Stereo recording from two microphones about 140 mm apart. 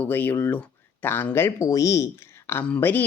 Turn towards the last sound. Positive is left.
turn(degrees=15)  # may be behind; listen again after turning